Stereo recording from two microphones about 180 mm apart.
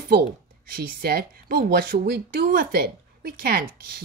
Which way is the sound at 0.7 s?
55° right (ahead or behind).